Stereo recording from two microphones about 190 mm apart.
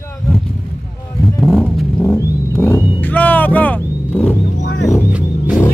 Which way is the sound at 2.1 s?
10° left (ahead or behind).